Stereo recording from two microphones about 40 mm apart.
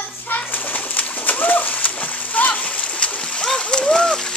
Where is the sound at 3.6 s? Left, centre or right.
Left.